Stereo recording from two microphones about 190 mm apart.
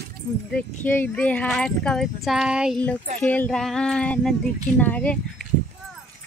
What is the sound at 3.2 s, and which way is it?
Speech, 5° left (ahead or behind).